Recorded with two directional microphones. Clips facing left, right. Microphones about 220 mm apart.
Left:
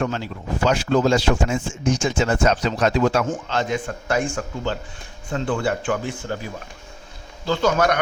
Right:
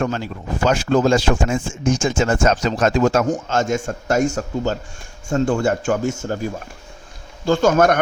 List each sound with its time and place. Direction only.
0.0 s speech: 45° right (ahead or behind)